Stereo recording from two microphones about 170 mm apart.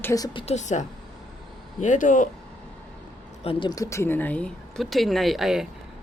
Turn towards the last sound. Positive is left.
turn(degrees=0)  # may be behind; listen again after turning